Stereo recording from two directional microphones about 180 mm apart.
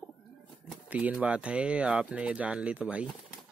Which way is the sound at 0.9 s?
5° right (ahead or behind).